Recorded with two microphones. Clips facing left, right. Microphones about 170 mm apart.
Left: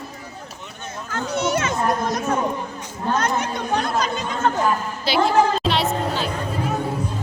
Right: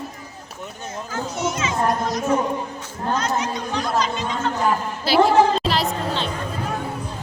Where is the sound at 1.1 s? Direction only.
65° left (ahead or behind).